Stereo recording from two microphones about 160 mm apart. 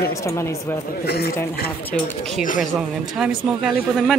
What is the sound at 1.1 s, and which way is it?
Speech, 85° left.